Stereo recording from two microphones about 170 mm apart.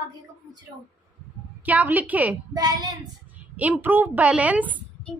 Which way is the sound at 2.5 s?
20° right (ahead or behind).